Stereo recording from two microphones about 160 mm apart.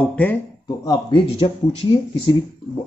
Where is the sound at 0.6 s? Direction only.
25° left (ahead or behind).